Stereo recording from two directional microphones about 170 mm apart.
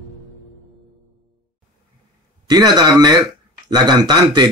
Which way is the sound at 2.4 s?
25° right (ahead or behind).